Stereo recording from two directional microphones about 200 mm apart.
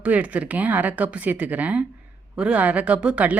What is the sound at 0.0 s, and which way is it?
Speech, 5° right (ahead or behind).